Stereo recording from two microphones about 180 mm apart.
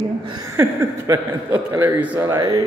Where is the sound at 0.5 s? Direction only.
15° right (ahead or behind).